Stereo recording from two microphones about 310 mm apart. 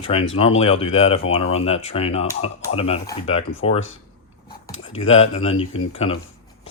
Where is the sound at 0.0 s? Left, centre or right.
Centre.